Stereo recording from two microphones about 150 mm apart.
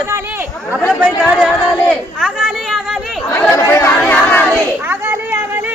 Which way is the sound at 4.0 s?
10° left (ahead or behind).